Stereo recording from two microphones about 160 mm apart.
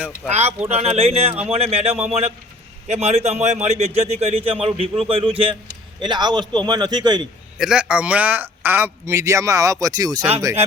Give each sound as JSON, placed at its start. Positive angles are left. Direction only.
{"t": 0.3, "sound": "a man's voice", "side_deg": -40}
{"t": 7.6, "sound": "a man's voice", "side_deg": -5}